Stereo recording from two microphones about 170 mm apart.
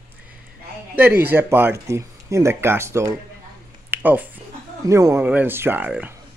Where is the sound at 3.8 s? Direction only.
10° right (ahead or behind).